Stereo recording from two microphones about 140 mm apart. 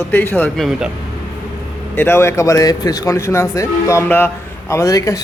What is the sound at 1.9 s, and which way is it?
Speech, 15° left (ahead or behind).